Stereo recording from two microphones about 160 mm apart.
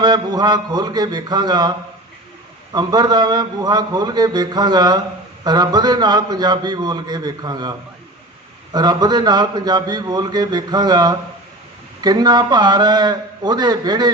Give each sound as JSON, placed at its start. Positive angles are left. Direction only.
{"t": 0.0, "sound": "a man's voice", "side_deg": -25}
{"t": 2.7, "sound": "a man's voice", "side_deg": -25}